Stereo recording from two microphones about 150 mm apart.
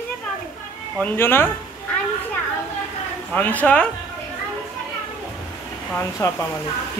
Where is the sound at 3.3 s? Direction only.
10° left (ahead or behind).